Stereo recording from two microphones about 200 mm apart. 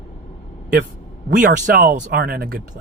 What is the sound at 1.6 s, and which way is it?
Speech, 45° right (ahead or behind).